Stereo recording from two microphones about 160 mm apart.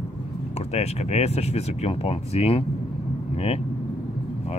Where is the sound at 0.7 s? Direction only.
40° left (ahead or behind).